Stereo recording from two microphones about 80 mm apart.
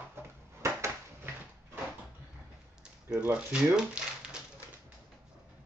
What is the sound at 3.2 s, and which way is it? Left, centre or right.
Speech, centre.